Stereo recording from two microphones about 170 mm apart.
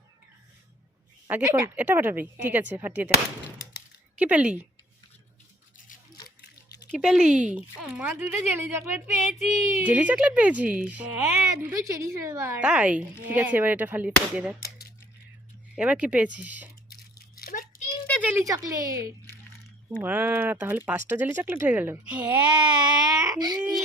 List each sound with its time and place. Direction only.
1.3 s speech: 10° right (ahead or behind)
4.2 s speech: 10° right (ahead or behind)
6.9 s speech: 5° right (ahead or behind)
15.7 s speech: 5° right (ahead or behind)
16.9 s a sound: 60° left (ahead or behind)
18.2 s a woman's voice: 15° right (ahead or behind)
22.7 s baby cry: 25° right (ahead or behind)